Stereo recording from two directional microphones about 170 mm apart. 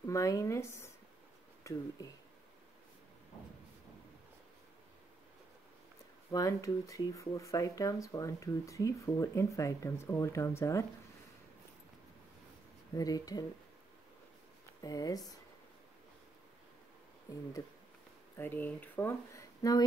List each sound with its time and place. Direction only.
0.0 s speech: 20° left (ahead or behind)
6.3 s speech: 20° left (ahead or behind)
12.9 s speech: 20° left (ahead or behind)
14.8 s speech: 20° left (ahead or behind)
18.4 s speech: 10° left (ahead or behind)